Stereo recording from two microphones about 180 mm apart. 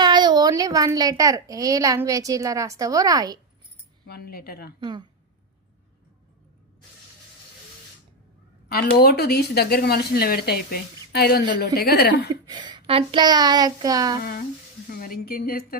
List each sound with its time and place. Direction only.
0.0 s a child's voice: 25° right (ahead or behind)
4.0 s speech: 60° left (ahead or behind)
4.8 s speech: 25° right (ahead or behind)
8.7 s speech: 60° left (ahead or behind)
12.3 s speech: 25° right (ahead or behind)
14.2 s speech: 55° left (ahead or behind)